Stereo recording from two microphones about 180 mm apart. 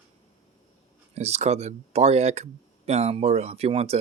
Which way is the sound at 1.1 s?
35° right (ahead or behind).